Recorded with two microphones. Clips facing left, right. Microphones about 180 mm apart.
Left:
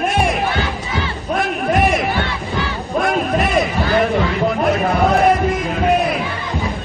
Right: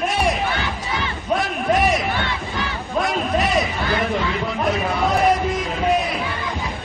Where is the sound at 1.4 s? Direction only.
55° left (ahead or behind).